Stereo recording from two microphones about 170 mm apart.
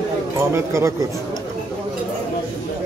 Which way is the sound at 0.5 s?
15° right (ahead or behind).